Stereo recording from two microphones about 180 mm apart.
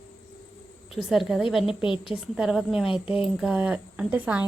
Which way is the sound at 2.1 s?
5° right (ahead or behind).